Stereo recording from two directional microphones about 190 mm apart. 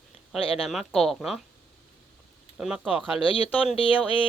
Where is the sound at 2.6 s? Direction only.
5° right (ahead or behind).